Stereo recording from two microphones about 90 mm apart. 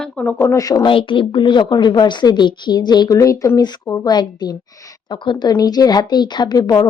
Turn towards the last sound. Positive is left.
turn(degrees=45)  # may be behind; listen again after turning